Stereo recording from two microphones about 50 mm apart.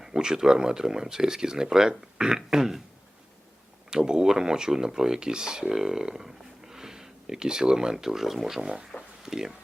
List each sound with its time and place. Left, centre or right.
0.0 s speech: centre
3.8 s speech: centre